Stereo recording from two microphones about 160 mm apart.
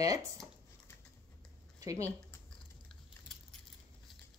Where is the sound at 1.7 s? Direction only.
20° right (ahead or behind).